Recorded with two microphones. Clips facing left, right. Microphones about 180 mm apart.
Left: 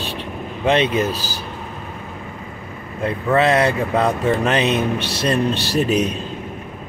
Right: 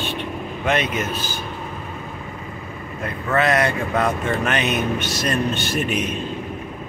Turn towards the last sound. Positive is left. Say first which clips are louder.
# left 5 dB
turn(degrees=35)  # may be behind; listen again after turning